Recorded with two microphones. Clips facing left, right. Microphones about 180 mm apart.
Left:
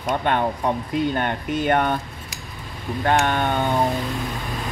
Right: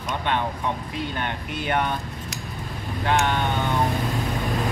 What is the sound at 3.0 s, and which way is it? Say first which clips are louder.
Speech: left 2 dB; 50° left (ahead or behind).